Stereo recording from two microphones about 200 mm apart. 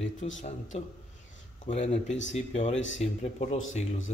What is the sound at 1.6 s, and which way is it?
A man's voice, 35° left (ahead or behind).